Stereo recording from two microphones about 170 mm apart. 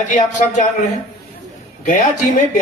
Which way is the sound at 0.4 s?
45° left (ahead or behind).